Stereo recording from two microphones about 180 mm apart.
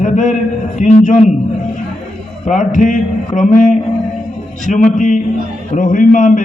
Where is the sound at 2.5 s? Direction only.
45° left (ahead or behind).